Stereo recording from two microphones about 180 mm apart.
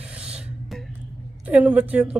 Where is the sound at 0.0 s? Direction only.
5° right (ahead or behind).